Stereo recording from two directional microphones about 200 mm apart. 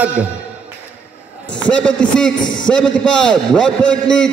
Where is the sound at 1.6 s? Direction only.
5° left (ahead or behind).